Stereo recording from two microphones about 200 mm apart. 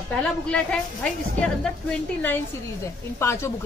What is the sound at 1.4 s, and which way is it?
A woman's voice, 5° left (ahead or behind).